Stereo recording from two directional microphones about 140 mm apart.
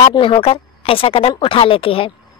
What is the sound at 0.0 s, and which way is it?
A woman's voice, 35° left (ahead or behind).